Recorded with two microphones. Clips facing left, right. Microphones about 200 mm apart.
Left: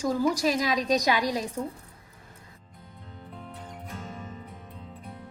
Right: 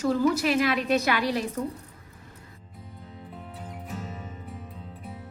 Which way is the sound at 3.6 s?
5° right (ahead or behind).